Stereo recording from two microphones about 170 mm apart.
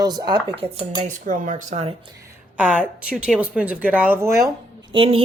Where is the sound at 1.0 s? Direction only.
50° right (ahead or behind).